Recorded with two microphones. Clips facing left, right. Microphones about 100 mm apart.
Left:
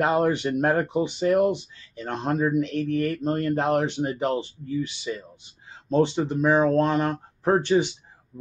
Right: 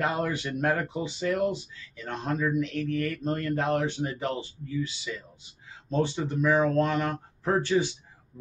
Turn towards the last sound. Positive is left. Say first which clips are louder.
# left 4 dB
turn(degrees=20)  # may be behind; listen again after turning